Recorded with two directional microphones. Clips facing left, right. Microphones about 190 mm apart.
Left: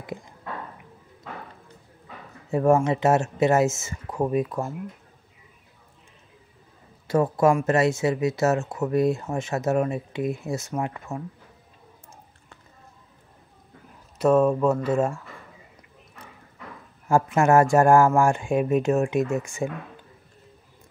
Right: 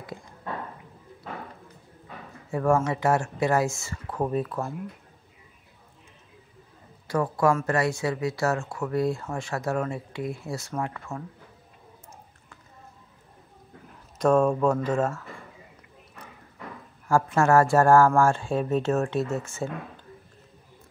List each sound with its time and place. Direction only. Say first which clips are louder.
0.0 s speech: left 4 dB; 20° left (ahead or behind)
2.5 s speech: left 4 dB; 20° left (ahead or behind)
7.1 s speech: left 3 dB; 20° left (ahead or behind)
14.1 s speech: left 2 dB; 5° left (ahead or behind)
17.1 s speech: left 2 dB; 20° left (ahead or behind)